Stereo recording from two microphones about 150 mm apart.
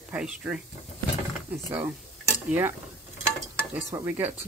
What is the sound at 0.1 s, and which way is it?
Speech, 5° right (ahead or behind).